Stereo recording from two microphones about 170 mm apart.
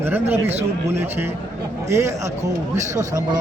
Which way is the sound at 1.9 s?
15° right (ahead or behind).